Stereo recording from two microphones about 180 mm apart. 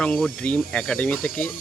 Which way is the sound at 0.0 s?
5° left (ahead or behind).